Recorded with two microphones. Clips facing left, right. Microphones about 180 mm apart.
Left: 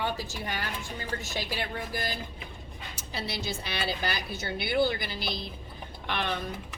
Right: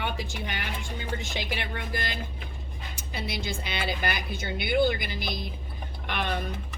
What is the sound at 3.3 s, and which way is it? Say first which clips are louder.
A woman's voice: right 2 dB; 15° right (ahead or behind).